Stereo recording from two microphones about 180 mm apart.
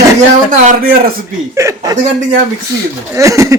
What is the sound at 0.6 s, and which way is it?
Speech, 50° right (ahead or behind).